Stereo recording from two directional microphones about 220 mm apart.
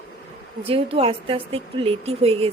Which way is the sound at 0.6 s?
25° right (ahead or behind).